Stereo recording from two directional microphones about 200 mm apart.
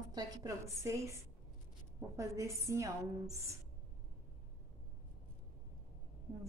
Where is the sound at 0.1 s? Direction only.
20° right (ahead or behind).